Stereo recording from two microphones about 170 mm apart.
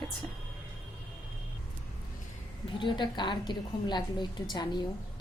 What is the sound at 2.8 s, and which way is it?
A woman's voice, 25° left (ahead or behind).